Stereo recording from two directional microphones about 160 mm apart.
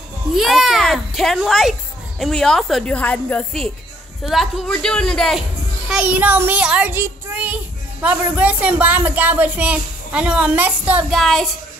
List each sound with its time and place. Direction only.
0.3 s a woman's voice: centre (ahead or behind)
5.9 s a child's voice: 10° right (ahead or behind)
11.1 s a woman's voice: centre (ahead or behind)